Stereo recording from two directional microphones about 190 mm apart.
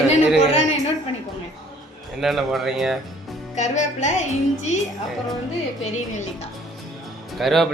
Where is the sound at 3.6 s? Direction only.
40° left (ahead or behind).